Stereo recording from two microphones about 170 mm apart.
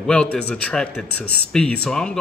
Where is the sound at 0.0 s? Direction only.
5° left (ahead or behind).